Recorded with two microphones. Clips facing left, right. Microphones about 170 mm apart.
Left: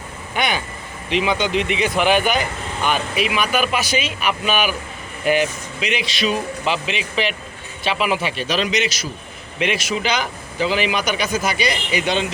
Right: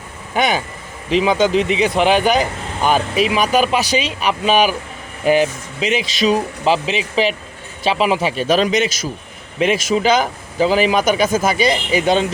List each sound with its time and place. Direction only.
0.3 s a man's voice: 40° right (ahead or behind)